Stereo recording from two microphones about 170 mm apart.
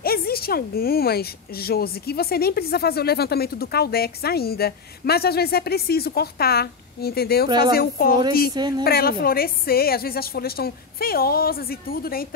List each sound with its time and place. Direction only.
0.0 s a woman's voice: 65° left (ahead or behind)
8.5 s speech: 25° right (ahead or behind)
8.8 s a woman's voice: 65° left (ahead or behind)